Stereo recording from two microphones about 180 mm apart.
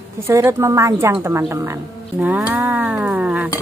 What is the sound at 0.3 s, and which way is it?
Speech, 15° right (ahead or behind).